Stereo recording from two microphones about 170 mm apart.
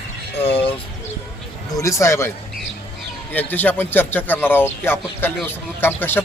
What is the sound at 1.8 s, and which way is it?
Speech, 15° left (ahead or behind).